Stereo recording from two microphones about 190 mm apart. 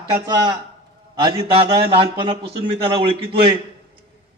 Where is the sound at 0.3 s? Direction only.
20° right (ahead or behind).